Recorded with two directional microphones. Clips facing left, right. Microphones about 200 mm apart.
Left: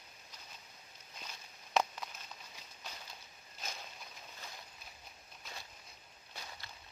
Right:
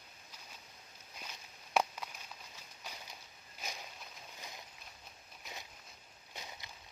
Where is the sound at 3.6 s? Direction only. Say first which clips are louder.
Right 1 dB; 15° right (ahead or behind).